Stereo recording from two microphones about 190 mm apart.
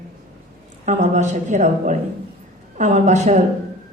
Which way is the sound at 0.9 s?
40° right (ahead or behind).